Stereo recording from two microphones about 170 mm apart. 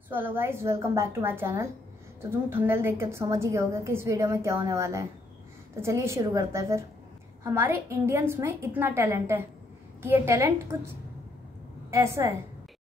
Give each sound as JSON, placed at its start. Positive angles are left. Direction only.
{"t": 0.1, "sound": "a woman's voice", "side_deg": -10}
{"t": 11.9, "sound": "a woman's voice", "side_deg": -15}